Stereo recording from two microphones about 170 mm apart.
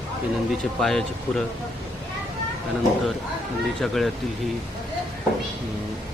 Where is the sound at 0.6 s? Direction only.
Centre (ahead or behind).